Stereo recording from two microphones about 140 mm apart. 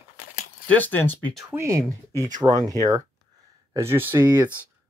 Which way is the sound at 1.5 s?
20° right (ahead or behind).